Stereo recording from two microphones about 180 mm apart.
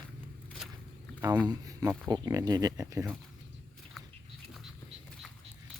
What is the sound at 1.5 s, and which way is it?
Speech, 20° right (ahead or behind).